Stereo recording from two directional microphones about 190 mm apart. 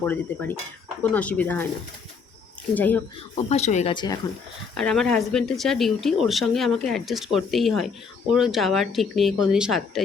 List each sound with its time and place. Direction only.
0.0 s speech: 10° left (ahead or behind)
2.7 s speech: 10° left (ahead or behind)
3.3 s speech: 35° left (ahead or behind)
3.9 s speech: 20° left (ahead or behind)
4.8 s speech: 5° left (ahead or behind)